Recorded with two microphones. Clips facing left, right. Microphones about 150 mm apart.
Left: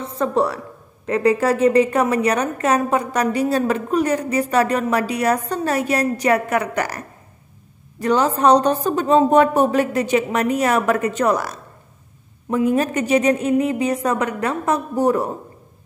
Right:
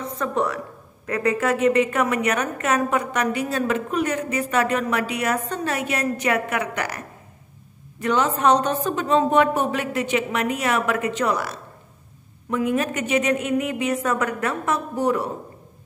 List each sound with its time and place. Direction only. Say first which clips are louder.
0.0 s a woman's voice: left 4 dB; 30° left (ahead or behind)
15.0 s a woman's voice: left 4 dB; 40° left (ahead or behind)